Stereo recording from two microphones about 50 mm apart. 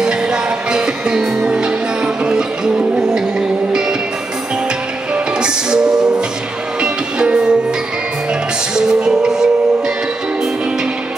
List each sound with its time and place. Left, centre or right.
0.0 s music: centre
5.1 s music: centre
8.7 s music: centre